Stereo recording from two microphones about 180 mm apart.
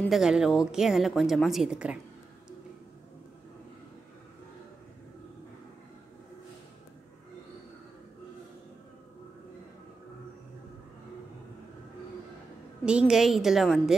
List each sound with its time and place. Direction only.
0.0 s a woman's voice: centre (ahead or behind)
12.8 s a woman's voice: 5° right (ahead or behind)